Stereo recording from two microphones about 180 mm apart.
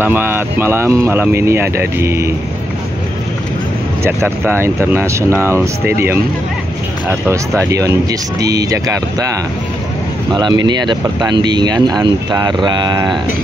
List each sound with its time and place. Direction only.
0.0 s speech: 10° right (ahead or behind)
4.0 s speech: 15° right (ahead or behind)
10.3 s speech: 25° right (ahead or behind)